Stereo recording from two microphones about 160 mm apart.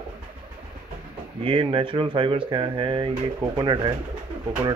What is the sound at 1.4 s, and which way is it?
Speech, 35° right (ahead or behind).